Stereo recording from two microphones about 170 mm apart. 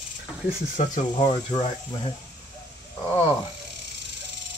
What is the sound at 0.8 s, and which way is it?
Speech, 45° left (ahead or behind).